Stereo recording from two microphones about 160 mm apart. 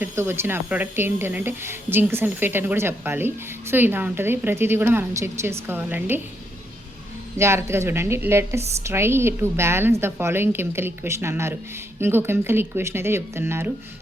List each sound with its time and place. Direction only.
0.0 s speech: 15° right (ahead or behind)
7.3 s speech: 15° right (ahead or behind)